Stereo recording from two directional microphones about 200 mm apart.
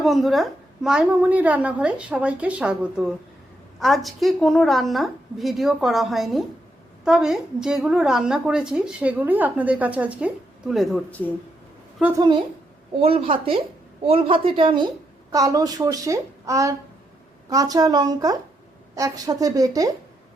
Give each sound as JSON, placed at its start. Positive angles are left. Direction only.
{"t": 0.0, "sound": "a woman's voice", "side_deg": 0}
{"t": 12.1, "sound": "a woman's voice", "side_deg": -20}